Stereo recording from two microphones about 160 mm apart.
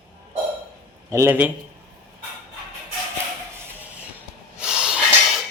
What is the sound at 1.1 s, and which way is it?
Speech, 15° right (ahead or behind).